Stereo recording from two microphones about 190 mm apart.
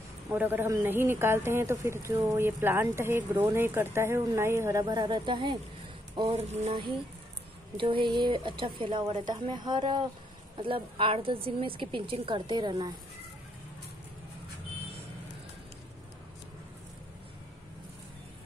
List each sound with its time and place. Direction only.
0.3 s a man's voice: 10° right (ahead or behind)
6.1 s a sound: 25° right (ahead or behind)
6.6 s a woman's voice: 25° right (ahead or behind)